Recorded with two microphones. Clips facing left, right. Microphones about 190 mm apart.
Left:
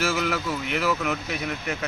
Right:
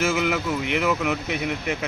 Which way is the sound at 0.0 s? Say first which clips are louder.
Right 3 dB; 15° right (ahead or behind).